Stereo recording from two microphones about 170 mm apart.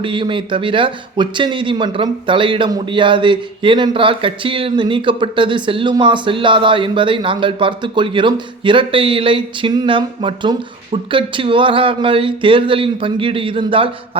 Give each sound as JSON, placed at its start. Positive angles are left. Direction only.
{"t": 0.0, "sound": "speech", "side_deg": -30}